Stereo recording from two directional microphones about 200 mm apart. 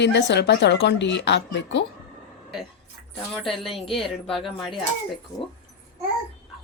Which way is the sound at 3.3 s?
Centre (ahead or behind).